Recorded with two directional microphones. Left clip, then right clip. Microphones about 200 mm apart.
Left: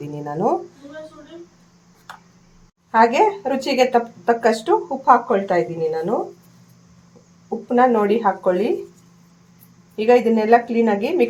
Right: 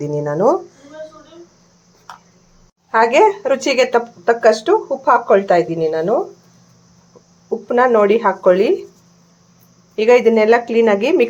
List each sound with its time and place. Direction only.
0.1 s speech: 25° right (ahead or behind)
2.9 s speech: 25° right (ahead or behind)
7.8 s speech: 20° right (ahead or behind)
9.9 s speech: 20° right (ahead or behind)